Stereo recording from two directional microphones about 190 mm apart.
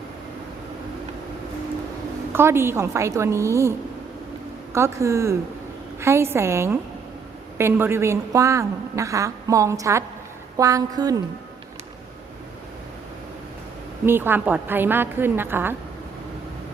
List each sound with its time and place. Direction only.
2.3 s a woman's voice: 15° right (ahead or behind)
14.0 s a woman's voice: 10° right (ahead or behind)